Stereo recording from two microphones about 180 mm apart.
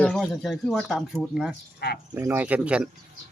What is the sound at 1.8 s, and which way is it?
Speech, 60° left (ahead or behind).